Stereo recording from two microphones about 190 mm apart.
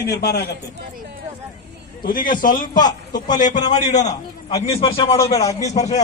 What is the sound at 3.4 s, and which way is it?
Speech, 20° left (ahead or behind).